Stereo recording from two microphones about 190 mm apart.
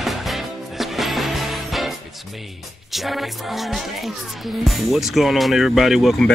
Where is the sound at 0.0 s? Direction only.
Centre (ahead or behind).